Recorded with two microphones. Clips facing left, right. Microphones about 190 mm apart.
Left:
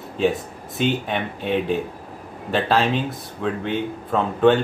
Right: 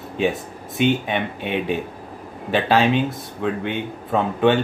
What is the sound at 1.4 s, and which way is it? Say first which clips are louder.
Speech: left 1 dB; 65° right (ahead or behind).